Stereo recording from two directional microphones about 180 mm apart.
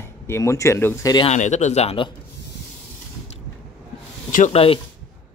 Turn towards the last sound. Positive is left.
turn(degrees=35)  # may be behind; listen again after turning